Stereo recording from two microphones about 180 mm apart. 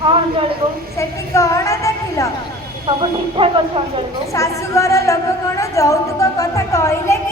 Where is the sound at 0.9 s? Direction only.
15° left (ahead or behind).